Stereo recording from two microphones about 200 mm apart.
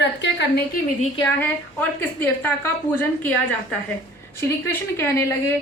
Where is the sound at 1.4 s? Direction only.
10° left (ahead or behind).